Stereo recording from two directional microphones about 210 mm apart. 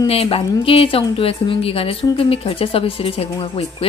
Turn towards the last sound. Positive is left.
turn(degrees=25)  # may be behind; listen again after turning